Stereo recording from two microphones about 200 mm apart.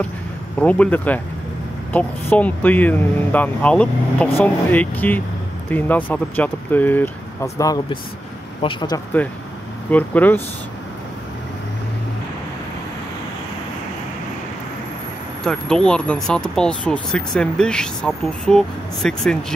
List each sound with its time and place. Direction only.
0.6 s speech: 5° left (ahead or behind); by 9.0 s 25° left (ahead or behind)
9.8 s speech: 10° left (ahead or behind)
15.4 s speech: 5° left (ahead or behind)